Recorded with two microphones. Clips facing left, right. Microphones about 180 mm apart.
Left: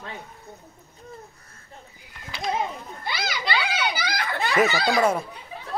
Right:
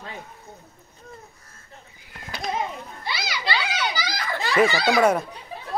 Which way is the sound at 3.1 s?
55° left (ahead or behind).